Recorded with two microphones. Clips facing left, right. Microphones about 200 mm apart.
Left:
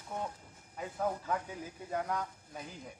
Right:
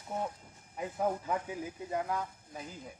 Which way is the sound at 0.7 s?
15° right (ahead or behind).